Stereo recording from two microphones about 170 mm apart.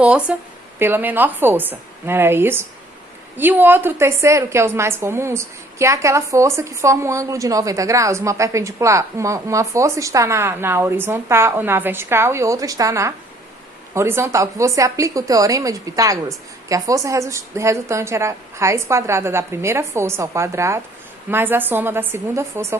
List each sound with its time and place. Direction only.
0.0 s a woman's voice: 5° right (ahead or behind)